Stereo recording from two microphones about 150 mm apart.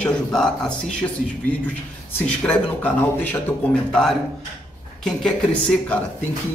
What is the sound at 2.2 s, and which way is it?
Speech, 10° left (ahead or behind).